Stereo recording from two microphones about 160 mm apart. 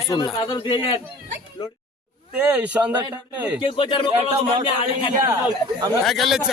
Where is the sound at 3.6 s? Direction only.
30° left (ahead or behind).